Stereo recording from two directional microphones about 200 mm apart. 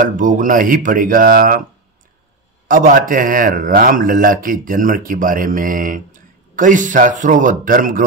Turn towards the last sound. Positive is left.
turn(degrees=-45)  # may be behind; listen again after turning